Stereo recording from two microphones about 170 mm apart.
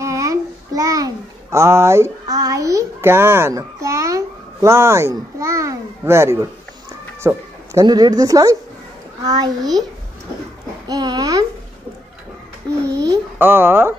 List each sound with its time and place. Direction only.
0.0 s a sound: 20° right (ahead or behind)
7.2 s a child's voice: 20° right (ahead or behind)
10.9 s a child's voice: 25° right (ahead or behind)
12.8 s a child's voice: 90° right
13.1 s speech: 10° right (ahead or behind)